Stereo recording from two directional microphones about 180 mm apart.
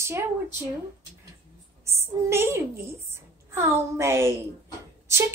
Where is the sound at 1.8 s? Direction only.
15° right (ahead or behind).